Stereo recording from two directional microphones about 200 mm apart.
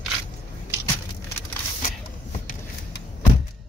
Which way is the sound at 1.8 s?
40° left (ahead or behind).